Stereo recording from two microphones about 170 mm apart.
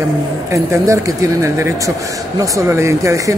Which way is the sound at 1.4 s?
15° right (ahead or behind).